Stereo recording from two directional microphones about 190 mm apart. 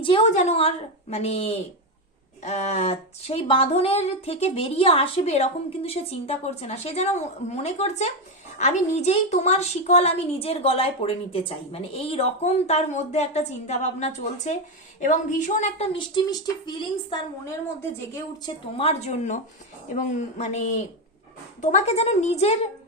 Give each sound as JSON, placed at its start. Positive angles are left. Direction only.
{"t": 0.0, "sound": "a woman's voice", "side_deg": 30}
{"t": 18.8, "sound": "a woman's voice", "side_deg": 35}